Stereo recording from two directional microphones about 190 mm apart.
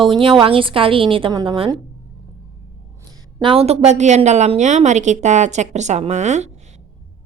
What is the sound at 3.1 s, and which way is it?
A woman's voice, 20° right (ahead or behind).